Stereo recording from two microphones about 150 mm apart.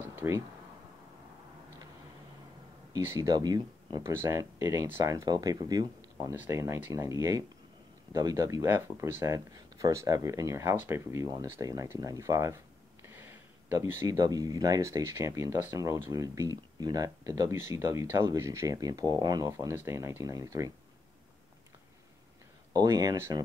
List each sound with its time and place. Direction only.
0.1 s a sound: 15° right (ahead or behind)
2.9 s speech: 20° right (ahead or behind)
6.3 s speech: 15° right (ahead or behind)
22.7 s speech: 25° right (ahead or behind)